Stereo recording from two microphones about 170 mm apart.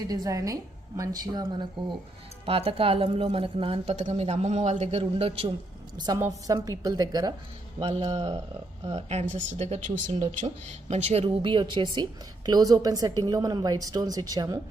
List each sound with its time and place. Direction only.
0.0 s a woman's voice: 20° right (ahead or behind)
6.0 s a woman's voice: 20° right (ahead or behind)
7.8 s speech: 40° right (ahead or behind)
11.2 s a woman's voice: 30° right (ahead or behind)